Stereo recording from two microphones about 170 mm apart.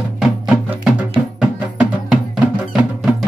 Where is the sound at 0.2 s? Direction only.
5° right (ahead or behind).